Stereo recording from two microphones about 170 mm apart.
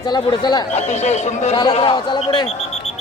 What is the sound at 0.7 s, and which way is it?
Speech, 40° left (ahead or behind).